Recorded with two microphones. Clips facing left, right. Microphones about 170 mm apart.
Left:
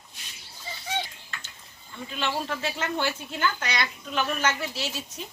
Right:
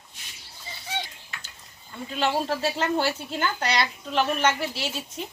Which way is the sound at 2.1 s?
35° right (ahead or behind).